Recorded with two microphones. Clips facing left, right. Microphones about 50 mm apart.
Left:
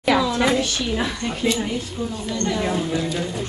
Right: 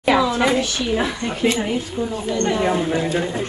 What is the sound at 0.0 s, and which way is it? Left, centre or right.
A woman's voice, centre.